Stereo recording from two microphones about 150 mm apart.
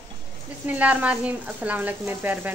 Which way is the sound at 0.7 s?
10° right (ahead or behind).